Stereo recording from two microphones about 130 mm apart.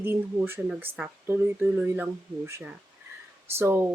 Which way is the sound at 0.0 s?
15° right (ahead or behind).